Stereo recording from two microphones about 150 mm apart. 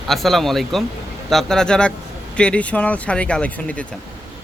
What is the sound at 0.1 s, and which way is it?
Speech, centre (ahead or behind).